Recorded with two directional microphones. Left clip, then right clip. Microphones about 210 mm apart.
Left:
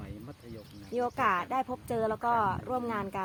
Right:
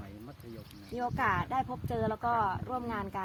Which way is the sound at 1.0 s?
30° left (ahead or behind).